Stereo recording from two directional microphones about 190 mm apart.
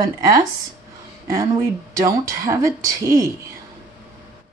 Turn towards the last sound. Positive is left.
turn(degrees=-15)  # may be behind; listen again after turning